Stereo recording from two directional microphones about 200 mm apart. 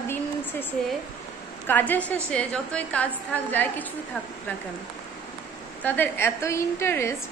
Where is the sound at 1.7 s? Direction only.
10° left (ahead or behind).